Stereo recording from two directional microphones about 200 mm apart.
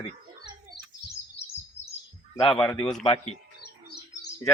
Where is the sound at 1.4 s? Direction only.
55° left (ahead or behind).